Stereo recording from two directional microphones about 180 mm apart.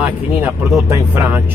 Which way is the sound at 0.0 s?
5° right (ahead or behind).